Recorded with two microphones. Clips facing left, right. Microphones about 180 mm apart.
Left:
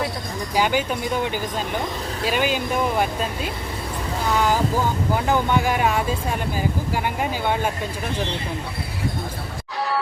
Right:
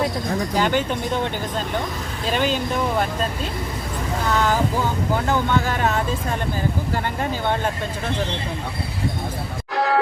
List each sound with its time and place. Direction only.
0.5 s speech: 10° left (ahead or behind)
5.3 s speech: 15° left (ahead or behind)
9.7 s music: 55° right (ahead or behind)